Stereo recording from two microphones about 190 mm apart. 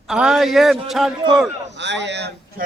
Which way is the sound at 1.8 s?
65° right (ahead or behind).